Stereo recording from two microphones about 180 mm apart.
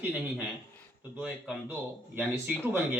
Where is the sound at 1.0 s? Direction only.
10° right (ahead or behind).